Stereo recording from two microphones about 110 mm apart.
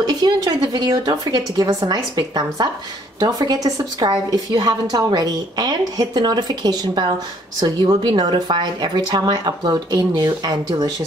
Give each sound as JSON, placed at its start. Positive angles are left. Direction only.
{"t": 0.0, "sound": "a woman's voice", "side_deg": -40}